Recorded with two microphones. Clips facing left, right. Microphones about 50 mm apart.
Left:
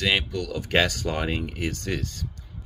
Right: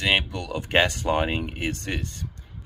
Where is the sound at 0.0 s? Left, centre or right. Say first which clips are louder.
Right 1 dB; right.